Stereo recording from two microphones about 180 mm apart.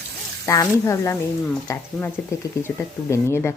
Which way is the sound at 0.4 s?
15° left (ahead or behind).